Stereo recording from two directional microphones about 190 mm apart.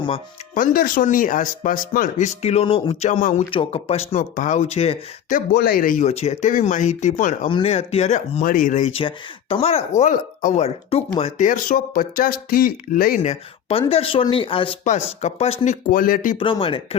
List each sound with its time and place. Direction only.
0.5 s speech: 45° left (ahead or behind)
3.5 s speech: 30° left (ahead or behind)
5.5 s speech: 50° left (ahead or behind)
7.4 s speech: 30° left (ahead or behind)
9.0 s speech: 30° left (ahead or behind); by 13.3 s 45° left (ahead or behind)
13.7 s speech: 30° left (ahead or behind)
15.6 s speech: 45° left (ahead or behind)
16.4 s speech: 30° left (ahead or behind)